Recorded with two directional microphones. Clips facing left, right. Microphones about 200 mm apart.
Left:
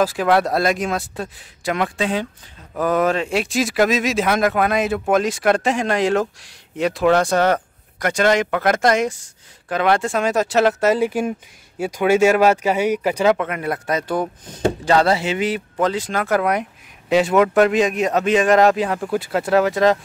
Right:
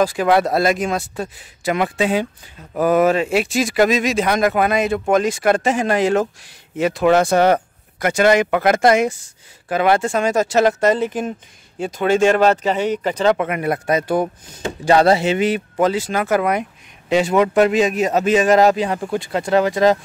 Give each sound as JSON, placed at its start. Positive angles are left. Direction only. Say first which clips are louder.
{"t": 0.0, "sound": "speech", "louder": "right 1 dB", "side_deg": 0}
{"t": 13.4, "sound": "speech", "louder": "right 3 dB", "side_deg": -15}
{"t": 15.8, "sound": "speech", "louder": "right 2 dB", "side_deg": -5}